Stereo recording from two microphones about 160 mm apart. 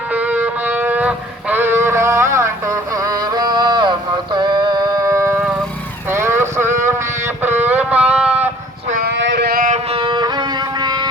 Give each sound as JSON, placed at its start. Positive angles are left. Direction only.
{"t": 0.1, "sound": "music", "side_deg": -10}
{"t": 6.1, "sound": "vehicle", "side_deg": -15}
{"t": 7.4, "sound": "music", "side_deg": -10}
{"t": 8.9, "sound": "a sound", "side_deg": -80}
{"t": 9.6, "sound": "music", "side_deg": -45}
{"t": 10.0, "sound": "music", "side_deg": -30}